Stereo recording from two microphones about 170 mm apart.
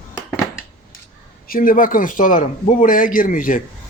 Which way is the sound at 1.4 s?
55° left (ahead or behind).